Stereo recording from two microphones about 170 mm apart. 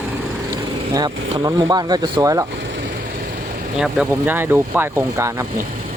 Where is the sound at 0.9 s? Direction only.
25° right (ahead or behind).